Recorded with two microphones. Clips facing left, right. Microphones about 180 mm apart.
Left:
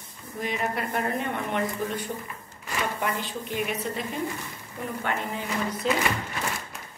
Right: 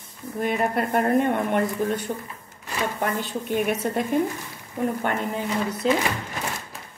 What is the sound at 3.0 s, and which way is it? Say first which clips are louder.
Speech: right 3 dB; 50° right (ahead or behind).